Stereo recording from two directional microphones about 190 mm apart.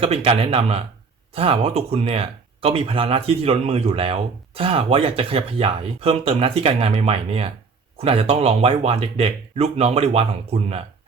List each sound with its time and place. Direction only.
0.0 s speech: 30° right (ahead or behind)